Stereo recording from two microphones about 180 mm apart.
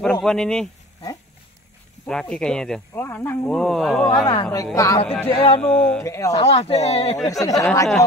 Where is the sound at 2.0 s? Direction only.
5° left (ahead or behind).